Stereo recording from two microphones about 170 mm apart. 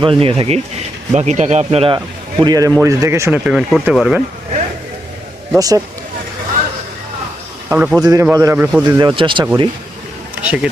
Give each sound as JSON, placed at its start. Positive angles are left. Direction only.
{"t": 0.0, "sound": "speech", "side_deg": -30}
{"t": 2.4, "sound": "speech", "side_deg": -20}
{"t": 5.5, "sound": "speech", "side_deg": -20}
{"t": 7.7, "sound": "speech", "side_deg": -10}
{"t": 7.9, "sound": "speech", "side_deg": -20}
{"t": 8.9, "sound": "speech", "side_deg": -25}
{"t": 10.4, "sound": "speech", "side_deg": -10}